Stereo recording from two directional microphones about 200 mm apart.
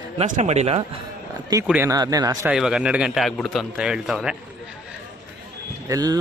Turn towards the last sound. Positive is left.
turn(degrees=-20)  # may be behind; listen again after turning